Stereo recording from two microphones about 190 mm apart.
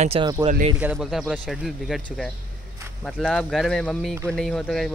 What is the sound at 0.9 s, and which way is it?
Speech, 5° left (ahead or behind).